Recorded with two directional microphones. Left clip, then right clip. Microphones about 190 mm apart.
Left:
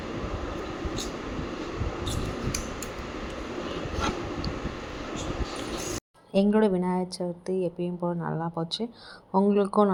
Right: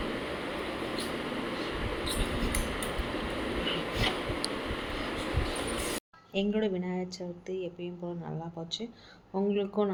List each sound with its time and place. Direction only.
6.3 s speech: 35° left (ahead or behind)